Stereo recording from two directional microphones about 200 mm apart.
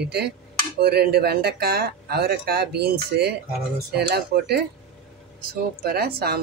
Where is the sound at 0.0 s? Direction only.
55° right (ahead or behind).